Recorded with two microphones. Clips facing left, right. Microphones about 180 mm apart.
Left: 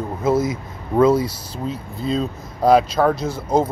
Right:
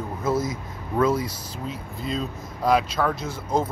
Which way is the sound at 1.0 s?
30° left (ahead or behind).